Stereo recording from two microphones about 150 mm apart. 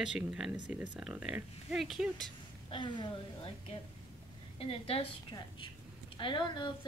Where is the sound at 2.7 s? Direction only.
35° left (ahead or behind).